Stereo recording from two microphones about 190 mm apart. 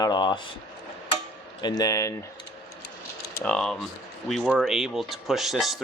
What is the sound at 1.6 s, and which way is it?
Speech, 20° left (ahead or behind).